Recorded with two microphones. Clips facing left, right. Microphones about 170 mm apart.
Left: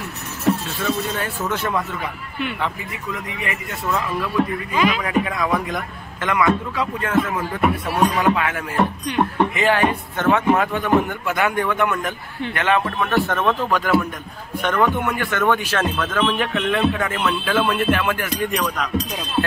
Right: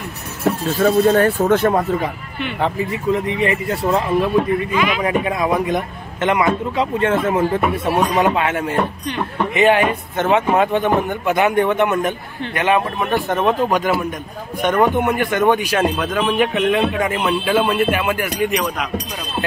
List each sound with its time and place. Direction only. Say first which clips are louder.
0.4 s speech: right 3 dB; 35° right (ahead or behind)
0.8 s a man's voice: right 11 dB; 50° right (ahead or behind)
2.6 s a man's voice: right 8 dB; 30° right (ahead or behind); by 18.5 s 10° right (ahead or behind)